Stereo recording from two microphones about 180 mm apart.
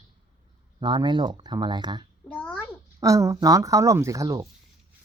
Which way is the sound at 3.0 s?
15° right (ahead or behind).